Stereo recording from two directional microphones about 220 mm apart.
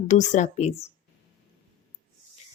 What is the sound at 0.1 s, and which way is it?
Speech, 35° left (ahead or behind).